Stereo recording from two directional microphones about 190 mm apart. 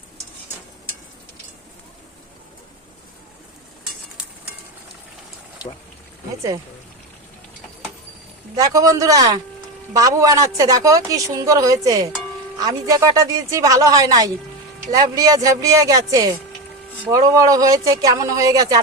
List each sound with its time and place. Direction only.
8.5 s a woman's voice: 20° right (ahead or behind)